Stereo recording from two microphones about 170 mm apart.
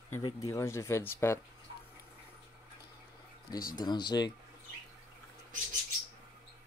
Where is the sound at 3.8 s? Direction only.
25° left (ahead or behind).